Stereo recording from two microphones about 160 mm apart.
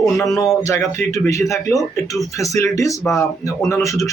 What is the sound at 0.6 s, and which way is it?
A man's voice, 15° left (ahead or behind).